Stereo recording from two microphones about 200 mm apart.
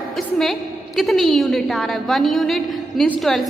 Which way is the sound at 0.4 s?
Centre (ahead or behind).